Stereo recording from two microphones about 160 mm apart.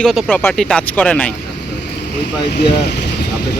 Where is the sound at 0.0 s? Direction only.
Centre (ahead or behind).